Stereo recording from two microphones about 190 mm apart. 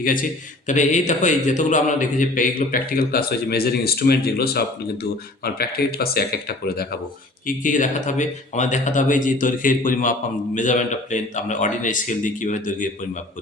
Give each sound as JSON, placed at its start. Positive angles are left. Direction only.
{"t": 0.0, "sound": "speech", "side_deg": 45}
{"t": 7.4, "sound": "speech", "side_deg": 45}